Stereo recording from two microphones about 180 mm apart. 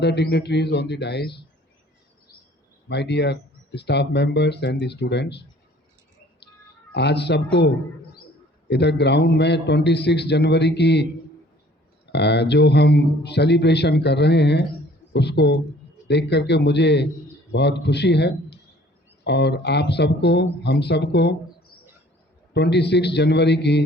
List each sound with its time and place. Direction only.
0.0 s speech: 65° left (ahead or behind)
2.9 s speech: 70° left (ahead or behind)
6.9 s speech: 70° left (ahead or behind)
8.6 s speech: 70° left (ahead or behind)
12.1 s a man's voice: 70° left (ahead or behind)
22.5 s speech: 70° left (ahead or behind)